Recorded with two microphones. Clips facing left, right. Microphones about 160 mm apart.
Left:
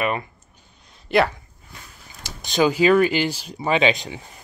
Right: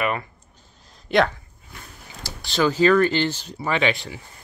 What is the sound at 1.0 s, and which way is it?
Speech, 5° left (ahead or behind).